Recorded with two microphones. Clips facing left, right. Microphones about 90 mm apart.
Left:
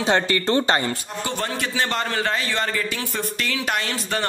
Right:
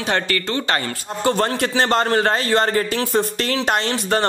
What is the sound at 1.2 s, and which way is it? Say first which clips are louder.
A man's voice: right 8 dB; 40° right (ahead or behind).